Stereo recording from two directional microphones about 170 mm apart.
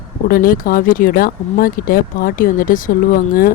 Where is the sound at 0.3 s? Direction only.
55° left (ahead or behind).